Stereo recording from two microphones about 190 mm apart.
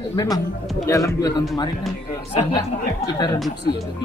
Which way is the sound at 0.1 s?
20° left (ahead or behind).